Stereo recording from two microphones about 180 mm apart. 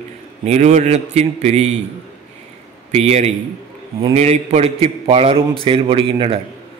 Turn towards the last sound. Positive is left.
turn(degrees=-30)  # may be behind; listen again after turning